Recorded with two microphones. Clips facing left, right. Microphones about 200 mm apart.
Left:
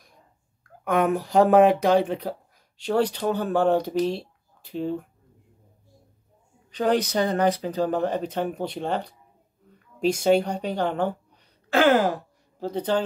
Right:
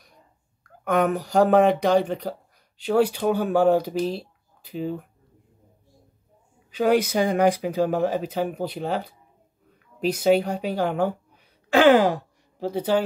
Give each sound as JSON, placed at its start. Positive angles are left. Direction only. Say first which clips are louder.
{"t": 0.7, "sound": "speech", "louder": "even", "side_deg": 0}
{"t": 6.7, "sound": "speech", "louder": "right 2 dB", "side_deg": -10}